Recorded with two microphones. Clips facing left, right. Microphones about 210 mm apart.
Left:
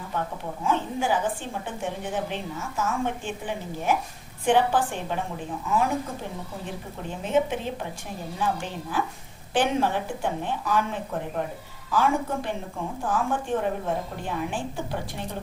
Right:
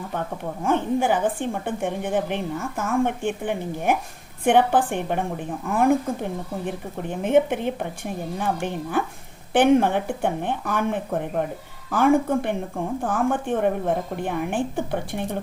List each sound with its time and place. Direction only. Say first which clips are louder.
0.6 s speech: right 5 dB; 55° right (ahead or behind)